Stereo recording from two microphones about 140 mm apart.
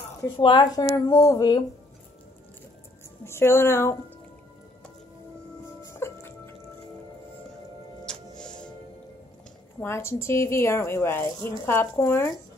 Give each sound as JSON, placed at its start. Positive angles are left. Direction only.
{"t": 0.4, "sound": "a woman's voice", "side_deg": 35}
{"t": 3.3, "sound": "speech", "side_deg": 20}
{"t": 5.9, "sound": "music", "side_deg": 15}
{"t": 8.0, "sound": "music", "side_deg": 5}
{"t": 9.8, "sound": "speech", "side_deg": 15}